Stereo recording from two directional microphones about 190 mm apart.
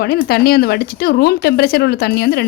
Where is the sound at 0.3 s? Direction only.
55° left (ahead or behind).